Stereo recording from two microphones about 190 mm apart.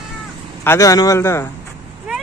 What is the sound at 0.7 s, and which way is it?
Speech, 15° left (ahead or behind).